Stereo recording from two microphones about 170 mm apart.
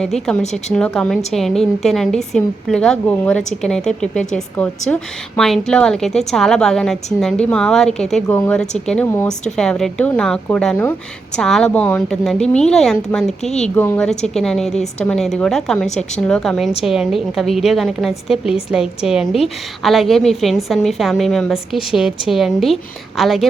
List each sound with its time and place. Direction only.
0.0 s a woman's voice: 5° left (ahead or behind)